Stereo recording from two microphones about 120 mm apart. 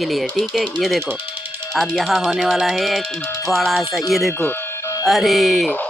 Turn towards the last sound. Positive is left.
turn(degrees=0)  # may be behind; listen again after turning